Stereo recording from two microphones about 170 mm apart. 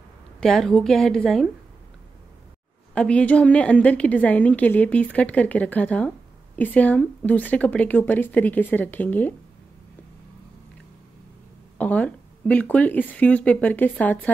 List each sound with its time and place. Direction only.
0.4 s a woman's voice: 5° left (ahead or behind)
2.9 s a woman's voice: 5° left (ahead or behind)
11.8 s a woman's voice: 10° left (ahead or behind)